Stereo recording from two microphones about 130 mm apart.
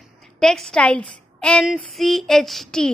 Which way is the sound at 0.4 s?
5° left (ahead or behind).